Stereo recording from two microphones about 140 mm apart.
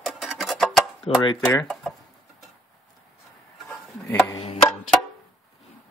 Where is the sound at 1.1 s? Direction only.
45° left (ahead or behind).